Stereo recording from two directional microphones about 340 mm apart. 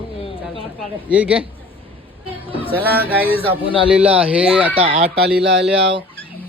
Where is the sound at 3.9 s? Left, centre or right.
Centre.